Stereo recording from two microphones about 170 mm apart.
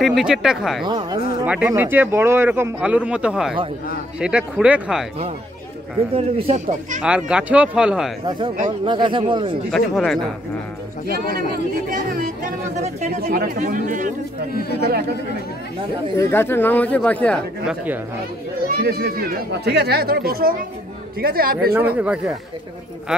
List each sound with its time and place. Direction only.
0.0 s speech: centre (ahead or behind)
6.1 s speech: 35° right (ahead or behind)
7.0 s speech: 5° right (ahead or behind)
8.6 s speech: 30° right (ahead or behind)
9.7 s speech: centre (ahead or behind)
11.1 s speech: 65° right (ahead or behind)
13.2 s speech: 65° right (ahead or behind)
14.8 s speech: 70° right (ahead or behind)
16.2 s speech: 15° left (ahead or behind)
18.8 s speech: 65° right (ahead or behind)
21.9 s speech: 5° right (ahead or behind)